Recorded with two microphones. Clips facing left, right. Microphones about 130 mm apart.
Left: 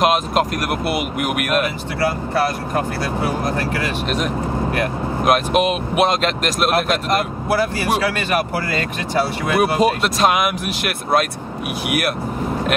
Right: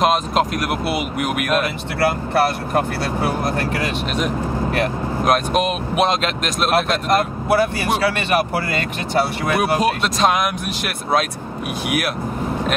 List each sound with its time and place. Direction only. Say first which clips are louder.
0.0 s speech: even; centre (ahead or behind)
2.0 s speech: right 2 dB; 65° right (ahead or behind)
5.2 s speech: left 2 dB; 5° left (ahead or behind)
9.6 s speech: left 3 dB; centre (ahead or behind)